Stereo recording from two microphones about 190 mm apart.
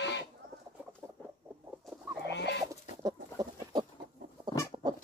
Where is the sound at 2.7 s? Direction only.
20° right (ahead or behind).